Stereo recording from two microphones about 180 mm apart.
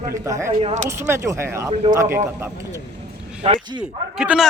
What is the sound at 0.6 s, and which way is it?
Speech, 40° right (ahead or behind).